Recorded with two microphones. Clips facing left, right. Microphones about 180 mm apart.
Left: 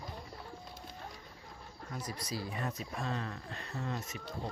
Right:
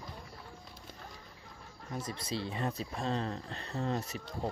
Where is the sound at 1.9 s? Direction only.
25° right (ahead or behind).